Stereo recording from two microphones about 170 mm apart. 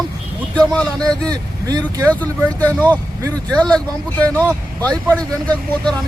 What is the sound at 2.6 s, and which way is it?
Speech, 10° left (ahead or behind).